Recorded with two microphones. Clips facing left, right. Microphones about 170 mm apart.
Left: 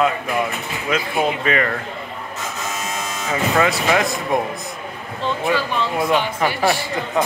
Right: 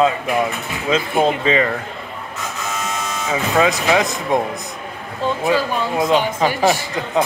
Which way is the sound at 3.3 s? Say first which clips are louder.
Right 1 dB; 15° right (ahead or behind).